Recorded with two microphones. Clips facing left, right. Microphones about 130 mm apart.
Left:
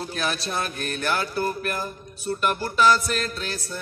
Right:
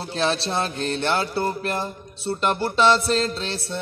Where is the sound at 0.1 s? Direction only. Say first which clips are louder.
Right 8 dB; 30° right (ahead or behind).